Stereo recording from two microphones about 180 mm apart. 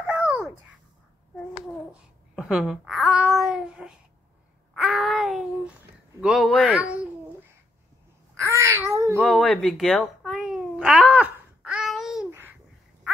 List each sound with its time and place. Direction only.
0.0 s babbling: 5° right (ahead or behind)
1.9 s babbling: 5° right (ahead or behind)
4.7 s a sound: centre (ahead or behind)
6.2 s speech: centre (ahead or behind)
8.4 s babbling: 15° right (ahead or behind)
9.2 s babbling: centre (ahead or behind)